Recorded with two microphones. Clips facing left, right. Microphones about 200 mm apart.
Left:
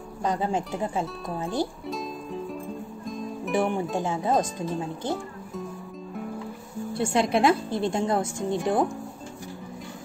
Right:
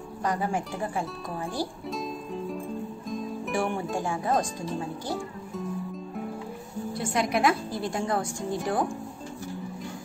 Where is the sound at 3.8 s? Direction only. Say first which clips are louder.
Left 2 dB; 20° left (ahead or behind).